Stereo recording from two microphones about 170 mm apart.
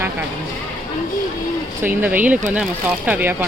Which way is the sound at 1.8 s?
10° right (ahead or behind).